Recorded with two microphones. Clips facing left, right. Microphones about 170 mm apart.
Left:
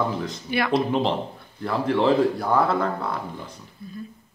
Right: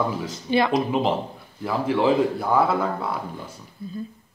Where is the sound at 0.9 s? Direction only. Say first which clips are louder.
Even; 5° right (ahead or behind).